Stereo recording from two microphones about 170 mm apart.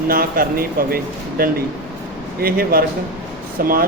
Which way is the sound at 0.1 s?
60° right (ahead or behind).